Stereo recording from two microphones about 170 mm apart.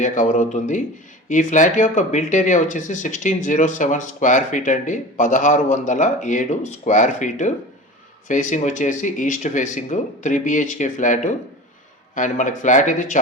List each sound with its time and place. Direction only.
0.0 s speech: 45° left (ahead or behind)